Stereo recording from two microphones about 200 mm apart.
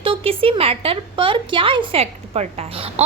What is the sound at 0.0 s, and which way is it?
A woman's voice, 25° right (ahead or behind).